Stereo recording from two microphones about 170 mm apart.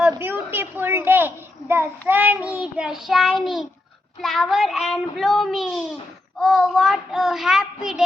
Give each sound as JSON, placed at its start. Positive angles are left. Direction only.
{"t": 0.0, "sound": "a woman's voice", "side_deg": -15}